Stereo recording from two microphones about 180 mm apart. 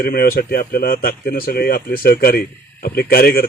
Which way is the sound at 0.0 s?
55° left (ahead or behind).